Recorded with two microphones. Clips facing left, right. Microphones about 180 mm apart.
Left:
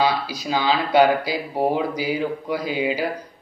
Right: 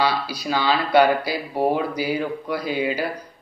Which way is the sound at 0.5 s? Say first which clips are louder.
Even; 15° left (ahead or behind).